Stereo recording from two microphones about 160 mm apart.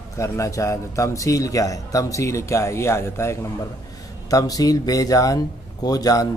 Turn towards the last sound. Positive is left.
turn(degrees=20)  # may be behind; listen again after turning